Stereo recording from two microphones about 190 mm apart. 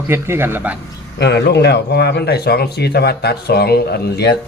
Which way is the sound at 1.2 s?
65° left (ahead or behind).